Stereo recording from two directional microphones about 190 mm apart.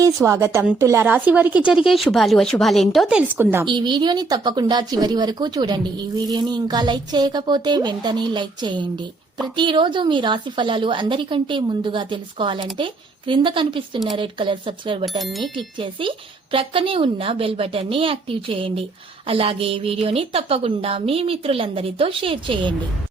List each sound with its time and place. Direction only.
0.0 s a woman's voice: 15° right (ahead or behind)
3.7 s speech: 25° right (ahead or behind)
15.2 s speech: centre (ahead or behind)
15.5 s speech: 25° right (ahead or behind)